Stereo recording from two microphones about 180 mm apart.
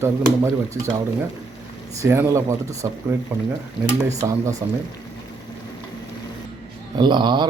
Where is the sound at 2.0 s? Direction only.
15° right (ahead or behind).